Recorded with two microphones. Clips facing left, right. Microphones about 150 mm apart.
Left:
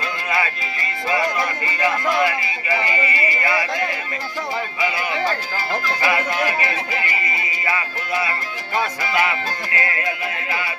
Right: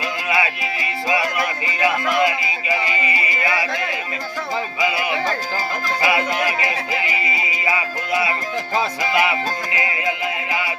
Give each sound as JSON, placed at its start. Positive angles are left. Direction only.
{"t": 0.3, "sound": "music", "side_deg": -10}
{"t": 1.6, "sound": "speech", "side_deg": -15}
{"t": 6.0, "sound": "speech", "side_deg": -15}
{"t": 9.7, "sound": "music", "side_deg": -15}